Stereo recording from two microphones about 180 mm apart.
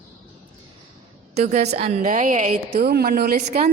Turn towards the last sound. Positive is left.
turn(degrees=-55)  # may be behind; listen again after turning